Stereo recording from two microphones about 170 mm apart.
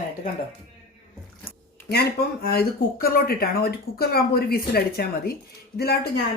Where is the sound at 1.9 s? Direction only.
70° left (ahead or behind).